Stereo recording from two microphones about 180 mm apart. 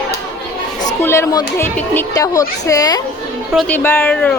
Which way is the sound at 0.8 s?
15° left (ahead or behind).